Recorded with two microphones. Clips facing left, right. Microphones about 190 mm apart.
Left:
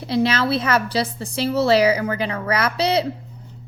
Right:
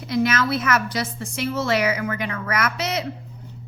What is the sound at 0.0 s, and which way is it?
A woman's voice, 30° left (ahead or behind).